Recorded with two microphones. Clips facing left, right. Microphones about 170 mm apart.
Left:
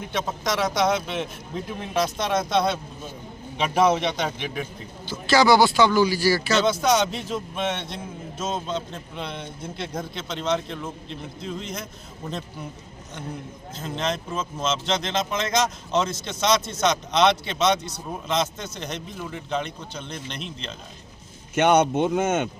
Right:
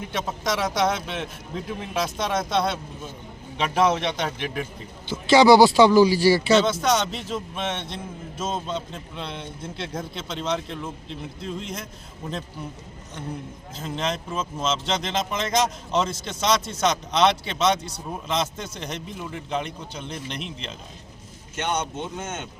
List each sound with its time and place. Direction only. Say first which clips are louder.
0.0 s a man's voice: left 1 dB; 5° right (ahead or behind)
5.0 s speech: right 4 dB; 25° right (ahead or behind)
6.5 s a man's voice: right 1 dB; centre (ahead or behind)
13.7 s a man's voice: even; centre (ahead or behind)
21.5 s speech: left 9 dB; 70° left (ahead or behind)